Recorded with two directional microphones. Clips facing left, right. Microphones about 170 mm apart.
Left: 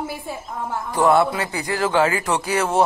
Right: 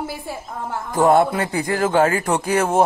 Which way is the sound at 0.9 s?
50° right (ahead or behind).